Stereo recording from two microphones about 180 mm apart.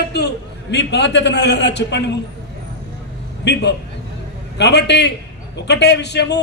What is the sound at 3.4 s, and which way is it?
A man's voice, 70° left (ahead or behind).